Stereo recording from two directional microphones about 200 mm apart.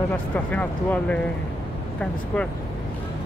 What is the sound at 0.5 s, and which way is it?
Speech, 5° left (ahead or behind).